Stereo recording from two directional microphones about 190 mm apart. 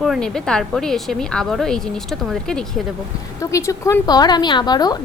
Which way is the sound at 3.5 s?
15° left (ahead or behind).